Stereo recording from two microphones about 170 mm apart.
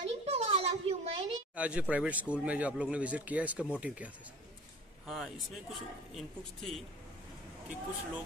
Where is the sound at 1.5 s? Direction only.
5° right (ahead or behind).